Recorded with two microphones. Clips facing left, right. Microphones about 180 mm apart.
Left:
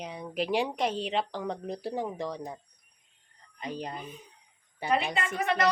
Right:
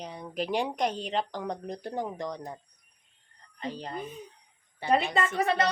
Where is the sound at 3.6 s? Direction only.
15° left (ahead or behind).